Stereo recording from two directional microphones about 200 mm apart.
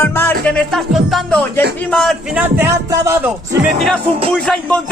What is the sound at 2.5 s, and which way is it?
Music, 15° right (ahead or behind).